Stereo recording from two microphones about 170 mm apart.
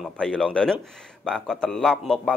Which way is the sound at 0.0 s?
5° left (ahead or behind).